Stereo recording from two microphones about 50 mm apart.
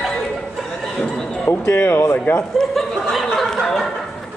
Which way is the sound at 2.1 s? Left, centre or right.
Left.